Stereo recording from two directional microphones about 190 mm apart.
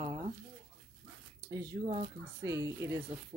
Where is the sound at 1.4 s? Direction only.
20° right (ahead or behind).